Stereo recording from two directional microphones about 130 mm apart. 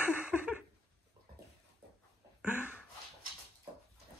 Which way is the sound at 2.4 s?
10° right (ahead or behind).